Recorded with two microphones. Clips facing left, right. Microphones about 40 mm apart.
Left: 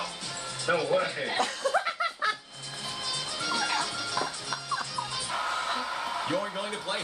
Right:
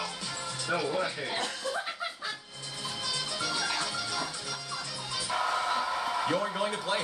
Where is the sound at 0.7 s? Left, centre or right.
Left.